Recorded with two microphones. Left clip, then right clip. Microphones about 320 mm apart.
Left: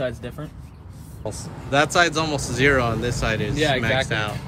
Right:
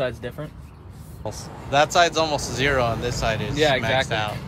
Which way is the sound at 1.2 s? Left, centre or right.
Centre.